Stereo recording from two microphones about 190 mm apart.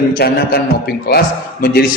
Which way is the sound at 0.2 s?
55° left (ahead or behind).